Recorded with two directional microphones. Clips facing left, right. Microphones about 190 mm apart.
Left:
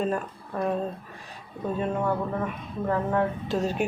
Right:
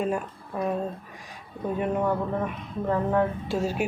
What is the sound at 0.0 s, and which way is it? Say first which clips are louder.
Speech: even; 10° right (ahead or behind).